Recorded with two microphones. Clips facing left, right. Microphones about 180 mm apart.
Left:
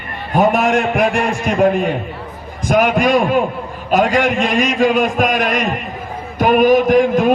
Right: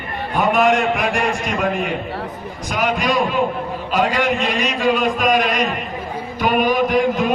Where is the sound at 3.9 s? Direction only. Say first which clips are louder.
Left 4 dB; 45° left (ahead or behind).